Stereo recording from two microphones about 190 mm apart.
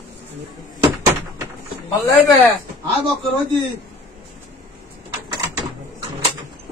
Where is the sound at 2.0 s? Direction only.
10° left (ahead or behind).